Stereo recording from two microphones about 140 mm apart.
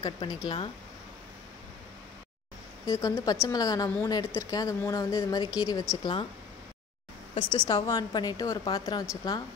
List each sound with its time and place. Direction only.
0.0 s speech: 30° left (ahead or behind)
2.8 s a woman's voice: 25° left (ahead or behind)
7.3 s a woman's voice: 30° left (ahead or behind)